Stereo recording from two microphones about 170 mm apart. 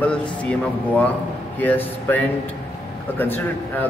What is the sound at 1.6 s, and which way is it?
Speech, 10° left (ahead or behind).